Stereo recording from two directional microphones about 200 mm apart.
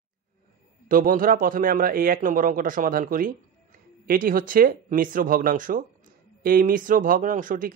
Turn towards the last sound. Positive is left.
turn(degrees=-45)  # may be behind; listen again after turning